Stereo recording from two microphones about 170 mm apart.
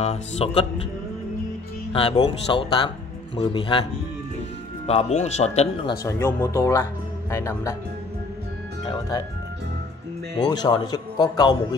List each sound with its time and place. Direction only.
0.0 s speech: 40° left (ahead or behind)
1.9 s a man's voice: 30° left (ahead or behind)
4.8 s speech: 40° left (ahead or behind)
6.0 s speech: 15° left (ahead or behind)
8.8 s a man's voice: 25° left (ahead or behind)
10.3 s a man's voice: 25° left (ahead or behind)